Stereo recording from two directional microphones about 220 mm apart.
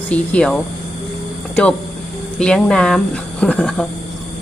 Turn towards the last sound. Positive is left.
turn(degrees=5)  # may be behind; listen again after turning